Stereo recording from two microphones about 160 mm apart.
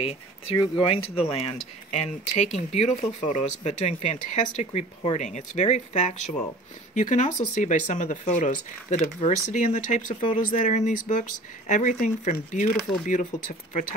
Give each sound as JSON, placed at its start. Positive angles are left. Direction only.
{"t": 0.0, "sound": "speech", "side_deg": 40}
{"t": 9.5, "sound": "speech", "side_deg": 50}